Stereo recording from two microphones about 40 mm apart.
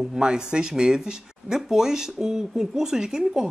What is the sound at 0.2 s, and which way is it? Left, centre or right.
Speech, right.